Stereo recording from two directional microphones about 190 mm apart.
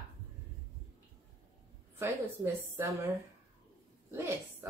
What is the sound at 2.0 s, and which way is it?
Speech, 10° right (ahead or behind).